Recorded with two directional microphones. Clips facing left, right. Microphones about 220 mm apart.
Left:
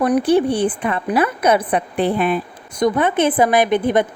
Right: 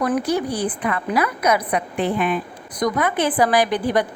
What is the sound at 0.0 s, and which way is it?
A woman's voice, 25° left (ahead or behind).